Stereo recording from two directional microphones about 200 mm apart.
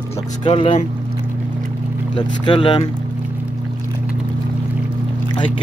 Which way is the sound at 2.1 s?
25° left (ahead or behind).